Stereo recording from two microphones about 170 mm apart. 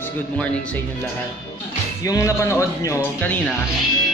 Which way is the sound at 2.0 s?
20° left (ahead or behind).